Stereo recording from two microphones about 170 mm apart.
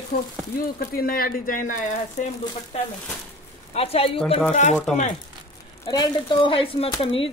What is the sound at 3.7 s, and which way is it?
Speech, 35° left (ahead or behind).